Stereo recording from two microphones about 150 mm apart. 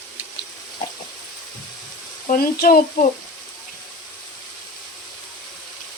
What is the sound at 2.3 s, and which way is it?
Speech, 80° left.